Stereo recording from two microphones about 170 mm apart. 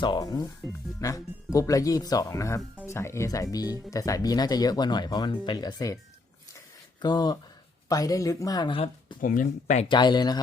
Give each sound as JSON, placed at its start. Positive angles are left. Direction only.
{"t": 0.0, "sound": "speech", "side_deg": 25}
{"t": 7.0, "sound": "speech", "side_deg": 25}
{"t": 9.2, "sound": "speech", "side_deg": 50}
{"t": 9.9, "sound": "speech", "side_deg": 25}